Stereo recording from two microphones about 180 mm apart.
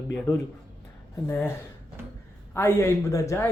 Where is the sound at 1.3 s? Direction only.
10° left (ahead or behind).